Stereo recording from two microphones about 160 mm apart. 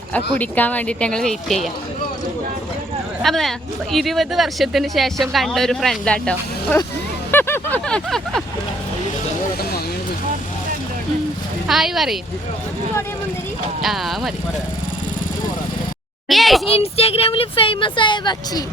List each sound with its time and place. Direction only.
0.1 s speech: 10° left (ahead or behind)
3.2 s speech: centre (ahead or behind)
7.3 s vehicle: 15° left (ahead or behind)
11.7 s speech: centre (ahead or behind)
13.8 s speech: centre (ahead or behind)
16.3 s a sound: centre (ahead or behind)
16.7 s speech: 40° left (ahead or behind)